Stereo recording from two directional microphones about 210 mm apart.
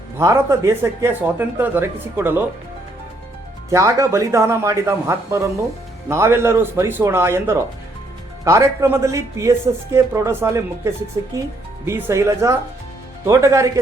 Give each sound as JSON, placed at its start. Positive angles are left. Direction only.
{"t": 0.2, "sound": "speech", "side_deg": -15}
{"t": 3.7, "sound": "speech", "side_deg": -15}